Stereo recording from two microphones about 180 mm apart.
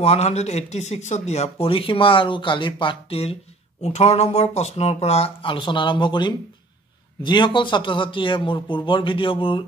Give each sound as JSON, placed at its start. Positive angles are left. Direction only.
{"t": 0.0, "sound": "a man's voice", "side_deg": 35}